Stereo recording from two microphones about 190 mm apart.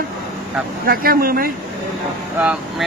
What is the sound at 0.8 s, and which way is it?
Speech, 50° right (ahead or behind).